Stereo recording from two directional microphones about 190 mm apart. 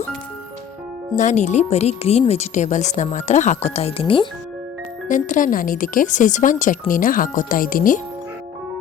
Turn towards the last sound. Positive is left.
turn(degrees=45)  # may be behind; listen again after turning